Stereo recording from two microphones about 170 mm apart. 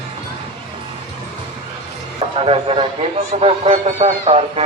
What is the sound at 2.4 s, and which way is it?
Speech, 35° right (ahead or behind).